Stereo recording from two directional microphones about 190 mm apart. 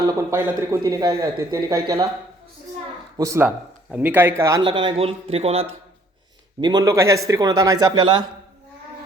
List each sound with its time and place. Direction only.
0.2 s speech: 15° right (ahead or behind)
3.2 s a man's voice: 15° right (ahead or behind); by 5.6 s 30° right (ahead or behind)
6.6 s a man's voice: 20° right (ahead or behind)